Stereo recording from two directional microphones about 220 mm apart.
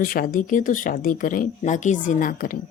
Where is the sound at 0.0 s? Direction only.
40° left (ahead or behind).